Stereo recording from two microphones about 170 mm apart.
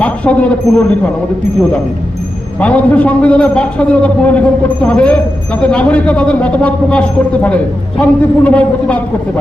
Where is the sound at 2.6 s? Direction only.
10° left (ahead or behind).